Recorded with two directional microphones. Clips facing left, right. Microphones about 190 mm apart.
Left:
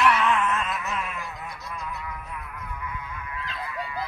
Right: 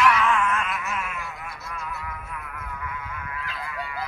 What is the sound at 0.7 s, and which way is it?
Music, 20° left (ahead or behind).